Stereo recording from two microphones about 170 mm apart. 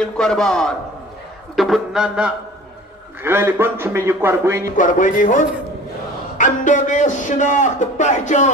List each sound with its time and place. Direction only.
0.0 s a man's voice: 5° left (ahead or behind); by 4.6 s 15° right (ahead or behind)
4.7 s a man's voice: 50° left (ahead or behind)